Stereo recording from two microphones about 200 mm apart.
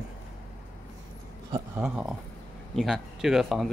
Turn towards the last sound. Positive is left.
turn(degrees=0)  # may be behind; listen again after turning